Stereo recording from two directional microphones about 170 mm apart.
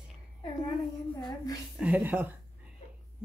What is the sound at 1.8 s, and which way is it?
Speech, 10° right (ahead or behind).